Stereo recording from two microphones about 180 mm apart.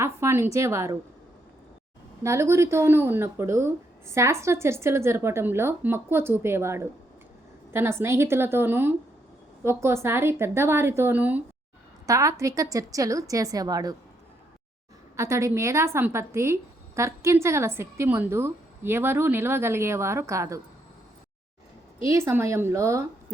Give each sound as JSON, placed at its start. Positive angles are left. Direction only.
{"t": 0.0, "sound": "a sound", "side_deg": -15}
{"t": 0.5, "sound": "speech", "side_deg": -15}
{"t": 2.2, "sound": "a woman's voice", "side_deg": -15}
{"t": 15.1, "sound": "speech", "side_deg": -15}
{"t": 22.0, "sound": "speech", "side_deg": -15}